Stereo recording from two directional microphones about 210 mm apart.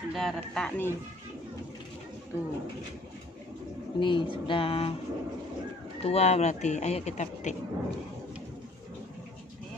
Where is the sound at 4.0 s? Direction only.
20° left (ahead or behind).